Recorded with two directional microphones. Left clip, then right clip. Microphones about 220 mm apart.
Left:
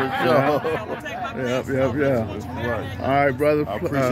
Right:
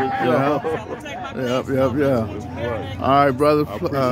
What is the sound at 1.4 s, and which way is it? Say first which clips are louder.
Speech: right 3 dB; 20° left (ahead or behind).